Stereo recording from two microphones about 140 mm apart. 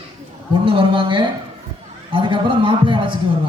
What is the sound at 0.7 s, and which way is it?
A man's voice, 40° right (ahead or behind).